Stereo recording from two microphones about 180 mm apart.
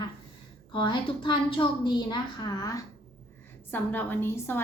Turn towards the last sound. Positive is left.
turn(degrees=15)  # may be behind; listen again after turning